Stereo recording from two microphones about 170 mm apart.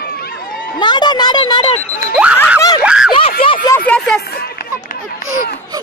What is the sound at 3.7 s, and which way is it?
Speech, 10° left (ahead or behind).